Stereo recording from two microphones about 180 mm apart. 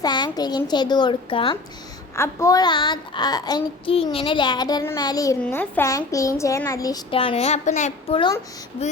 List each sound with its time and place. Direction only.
0.0 s child singing: 25° left (ahead or behind)
2.1 s child singing: 15° left (ahead or behind); by 8.2 s 40° left (ahead or behind)